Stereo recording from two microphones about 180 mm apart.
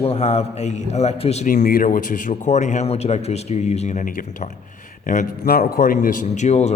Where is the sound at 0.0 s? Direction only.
35° left (ahead or behind).